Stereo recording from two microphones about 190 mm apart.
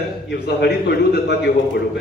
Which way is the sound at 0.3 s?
60° left (ahead or behind).